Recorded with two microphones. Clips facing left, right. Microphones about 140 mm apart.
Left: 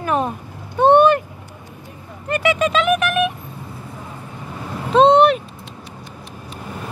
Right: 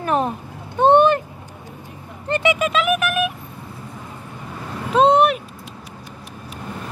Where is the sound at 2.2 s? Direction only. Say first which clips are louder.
Even; 25° right (ahead or behind).